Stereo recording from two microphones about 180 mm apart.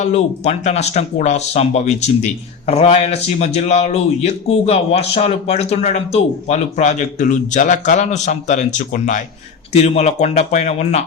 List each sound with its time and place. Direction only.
0.0 s speech: 40° left (ahead or behind)